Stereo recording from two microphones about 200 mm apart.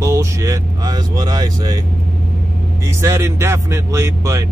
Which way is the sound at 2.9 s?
15° right (ahead or behind).